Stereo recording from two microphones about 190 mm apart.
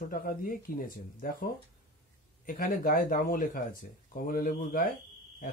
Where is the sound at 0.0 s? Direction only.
45° left (ahead or behind).